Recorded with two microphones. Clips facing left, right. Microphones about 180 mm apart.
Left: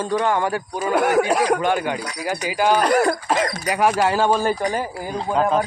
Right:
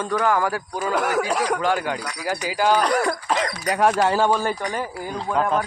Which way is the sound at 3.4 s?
45° left (ahead or behind).